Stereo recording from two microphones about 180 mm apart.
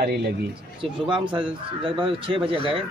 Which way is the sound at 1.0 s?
30° right (ahead or behind).